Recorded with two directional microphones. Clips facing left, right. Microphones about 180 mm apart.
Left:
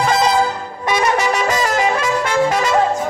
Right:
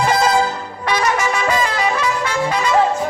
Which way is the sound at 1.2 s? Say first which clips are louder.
Left 1 dB; 40° left (ahead or behind).